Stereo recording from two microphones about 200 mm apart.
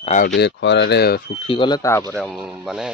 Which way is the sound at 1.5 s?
25° left (ahead or behind).